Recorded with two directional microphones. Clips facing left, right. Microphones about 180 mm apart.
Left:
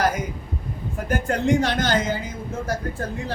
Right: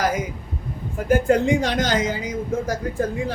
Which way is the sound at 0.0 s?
10° right (ahead or behind).